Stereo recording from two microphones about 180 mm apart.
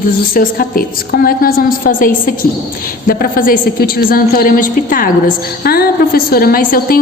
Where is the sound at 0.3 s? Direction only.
55° left (ahead or behind).